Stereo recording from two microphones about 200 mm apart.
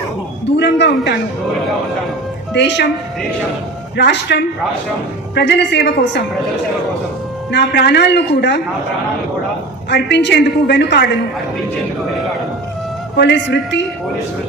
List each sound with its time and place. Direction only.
0.5 s a woman's voice: 60° left (ahead or behind)
2.5 s a woman's voice: 60° left (ahead or behind)
3.9 s a woman's voice: 60° left (ahead or behind)
7.5 s a woman's voice: 60° left (ahead or behind)
9.9 s a woman's voice: 60° left (ahead or behind)
13.1 s a woman's voice: 60° left (ahead or behind)